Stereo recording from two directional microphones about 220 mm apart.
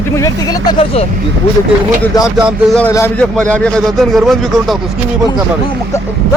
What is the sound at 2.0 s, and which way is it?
Speech, 15° left (ahead or behind).